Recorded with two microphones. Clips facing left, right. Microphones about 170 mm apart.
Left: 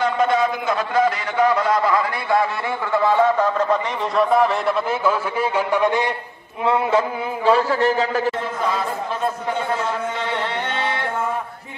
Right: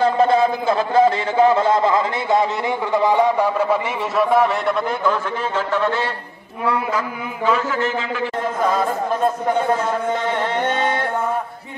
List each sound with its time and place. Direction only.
0.0 s a man's voice: 30° right (ahead or behind); by 6.0 s 15° left (ahead or behind)
6.6 s a man's voice: 25° left (ahead or behind)
10.6 s music: 45° right (ahead or behind)